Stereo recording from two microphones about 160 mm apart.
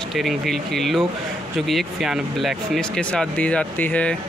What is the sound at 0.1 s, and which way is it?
Speech, centre (ahead or behind).